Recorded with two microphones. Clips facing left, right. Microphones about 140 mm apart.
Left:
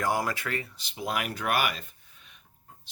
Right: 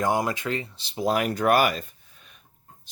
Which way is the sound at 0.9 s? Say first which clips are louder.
Right 8 dB; 35° right (ahead or behind).